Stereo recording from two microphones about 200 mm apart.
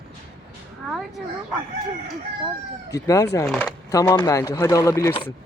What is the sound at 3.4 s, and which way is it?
Speech, 5° left (ahead or behind).